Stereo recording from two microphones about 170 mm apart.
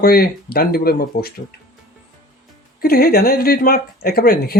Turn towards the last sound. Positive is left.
turn(degrees=65)  # may be behind; listen again after turning